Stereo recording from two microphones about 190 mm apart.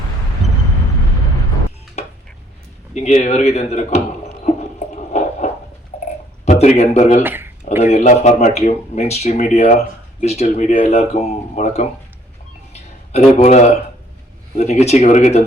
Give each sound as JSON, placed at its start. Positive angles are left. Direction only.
{"t": 2.0, "sound": "a sound", "side_deg": 35}
{"t": 2.9, "sound": "speech", "side_deg": 35}
{"t": 6.4, "sound": "a man's voice", "side_deg": 35}
{"t": 7.3, "sound": "speech", "side_deg": -10}
{"t": 7.8, "sound": "speech", "side_deg": 35}
{"t": 13.1, "sound": "speech", "side_deg": 35}